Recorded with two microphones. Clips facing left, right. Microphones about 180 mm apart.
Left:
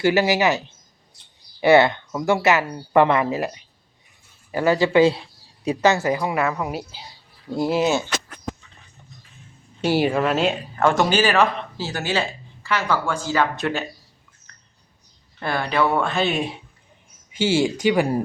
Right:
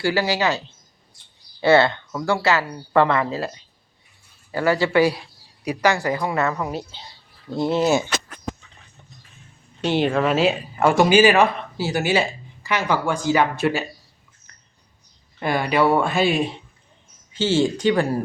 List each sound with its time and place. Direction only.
0.0 s speech: 20° left (ahead or behind)
1.6 s a woman's voice: 15° left (ahead or behind)
9.8 s speech: 5° left (ahead or behind); by 13.8 s 10° right (ahead or behind)
14.5 s a sound: 10° right (ahead or behind)
15.4 s speech: 15° right (ahead or behind)
17.3 s a woman's voice: 10° left (ahead or behind)